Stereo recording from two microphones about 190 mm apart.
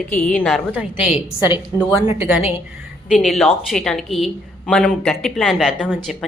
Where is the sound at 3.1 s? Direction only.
Centre (ahead or behind).